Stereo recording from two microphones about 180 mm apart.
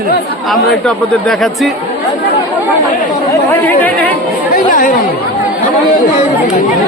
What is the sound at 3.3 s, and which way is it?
Speech, 10° left (ahead or behind).